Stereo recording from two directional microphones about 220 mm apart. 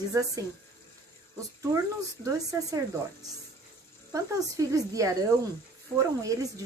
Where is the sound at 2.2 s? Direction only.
15° right (ahead or behind).